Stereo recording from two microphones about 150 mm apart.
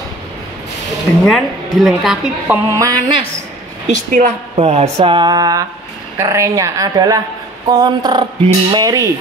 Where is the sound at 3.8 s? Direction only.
55° right (ahead or behind).